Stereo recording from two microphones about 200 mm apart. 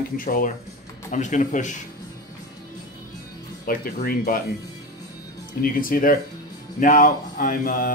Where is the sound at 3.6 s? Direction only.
45° left (ahead or behind).